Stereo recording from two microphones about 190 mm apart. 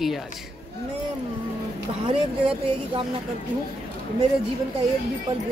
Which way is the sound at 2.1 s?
30° right (ahead or behind).